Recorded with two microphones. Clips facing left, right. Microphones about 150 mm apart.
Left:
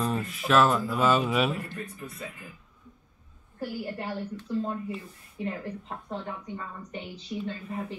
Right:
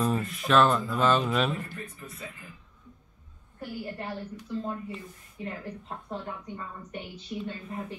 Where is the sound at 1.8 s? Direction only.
30° left (ahead or behind).